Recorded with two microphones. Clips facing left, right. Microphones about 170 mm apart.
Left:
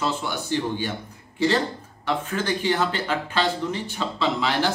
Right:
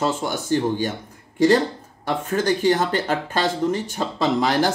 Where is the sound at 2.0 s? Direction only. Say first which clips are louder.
Right 4 dB; 45° right (ahead or behind).